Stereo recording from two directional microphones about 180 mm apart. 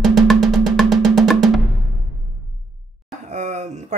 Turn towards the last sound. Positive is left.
turn(degrees=-40)  # may be behind; listen again after turning